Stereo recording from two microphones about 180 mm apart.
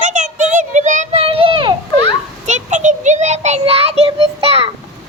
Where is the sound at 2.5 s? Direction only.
45° right (ahead or behind).